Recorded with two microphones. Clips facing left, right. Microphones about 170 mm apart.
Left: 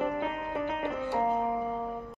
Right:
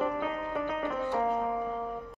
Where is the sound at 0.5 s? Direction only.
25° left (ahead or behind).